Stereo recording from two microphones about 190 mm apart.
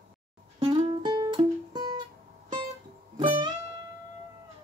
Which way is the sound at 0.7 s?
25° right (ahead or behind).